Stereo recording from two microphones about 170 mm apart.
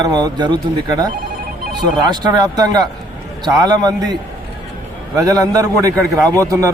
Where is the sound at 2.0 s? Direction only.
25° right (ahead or behind).